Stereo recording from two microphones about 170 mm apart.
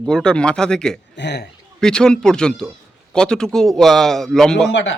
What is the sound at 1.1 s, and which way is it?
Speech, 85° left.